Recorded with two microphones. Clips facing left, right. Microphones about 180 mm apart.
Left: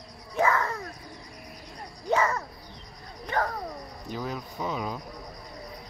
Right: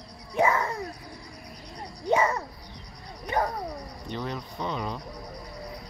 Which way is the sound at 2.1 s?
25° right (ahead or behind).